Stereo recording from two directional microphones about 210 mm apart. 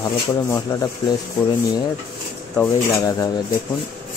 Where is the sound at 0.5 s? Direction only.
15° left (ahead or behind).